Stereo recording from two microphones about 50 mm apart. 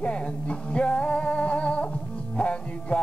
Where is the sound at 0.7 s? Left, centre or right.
Left.